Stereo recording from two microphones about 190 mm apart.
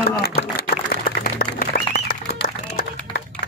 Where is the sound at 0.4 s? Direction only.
55° left (ahead or behind).